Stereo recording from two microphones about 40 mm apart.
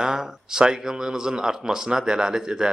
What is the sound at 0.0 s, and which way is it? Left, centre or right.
Speech, centre.